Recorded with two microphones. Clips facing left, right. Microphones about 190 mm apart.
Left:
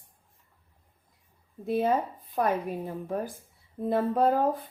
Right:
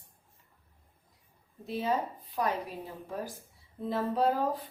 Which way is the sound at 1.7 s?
55° left (ahead or behind).